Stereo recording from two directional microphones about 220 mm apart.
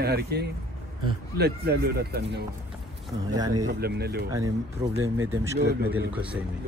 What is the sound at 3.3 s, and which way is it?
Speech, 20° right (ahead or behind).